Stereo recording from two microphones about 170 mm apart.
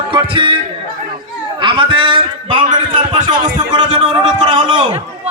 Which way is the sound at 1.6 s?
30° right (ahead or behind).